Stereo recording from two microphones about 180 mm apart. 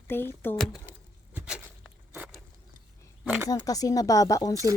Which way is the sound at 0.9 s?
10° right (ahead or behind).